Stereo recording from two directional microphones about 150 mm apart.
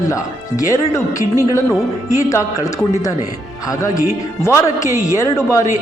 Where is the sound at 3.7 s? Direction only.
20° left (ahead or behind).